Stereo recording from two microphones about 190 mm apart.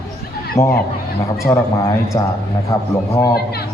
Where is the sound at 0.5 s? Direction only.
15° left (ahead or behind).